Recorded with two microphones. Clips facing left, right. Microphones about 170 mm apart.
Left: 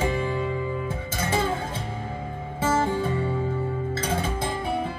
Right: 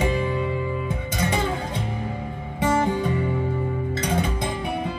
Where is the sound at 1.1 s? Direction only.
20° right (ahead or behind).